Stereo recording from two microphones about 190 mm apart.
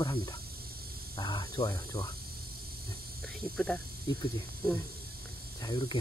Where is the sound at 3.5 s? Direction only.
5° left (ahead or behind).